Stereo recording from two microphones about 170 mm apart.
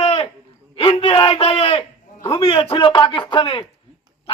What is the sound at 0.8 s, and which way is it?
A man's voice, 35° left (ahead or behind).